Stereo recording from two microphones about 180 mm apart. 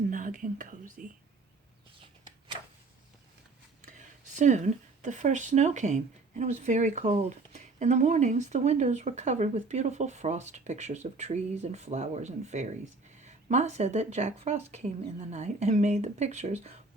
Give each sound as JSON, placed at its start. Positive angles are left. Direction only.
{"t": 0.1, "sound": "speech", "side_deg": -45}
{"t": 3.8, "sound": "speech", "side_deg": -45}